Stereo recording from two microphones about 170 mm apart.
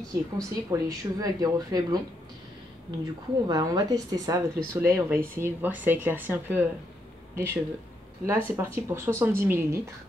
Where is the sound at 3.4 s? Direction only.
20° right (ahead or behind).